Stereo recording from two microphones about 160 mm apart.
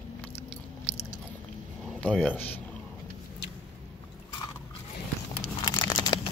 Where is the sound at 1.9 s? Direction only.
10° left (ahead or behind).